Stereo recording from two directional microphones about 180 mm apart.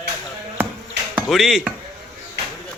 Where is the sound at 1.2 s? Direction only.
Centre (ahead or behind).